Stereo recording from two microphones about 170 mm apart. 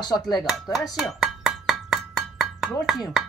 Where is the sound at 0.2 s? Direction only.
Centre (ahead or behind).